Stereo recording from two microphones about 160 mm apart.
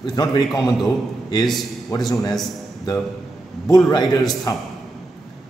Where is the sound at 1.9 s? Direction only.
25° left (ahead or behind).